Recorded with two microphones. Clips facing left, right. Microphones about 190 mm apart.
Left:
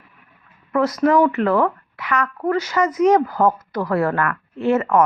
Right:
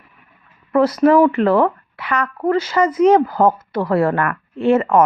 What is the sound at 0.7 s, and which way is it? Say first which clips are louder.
Speech: right 4 dB; 30° right (ahead or behind).